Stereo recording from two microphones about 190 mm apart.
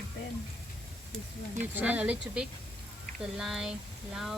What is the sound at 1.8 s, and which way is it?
Speech, 5° right (ahead or behind).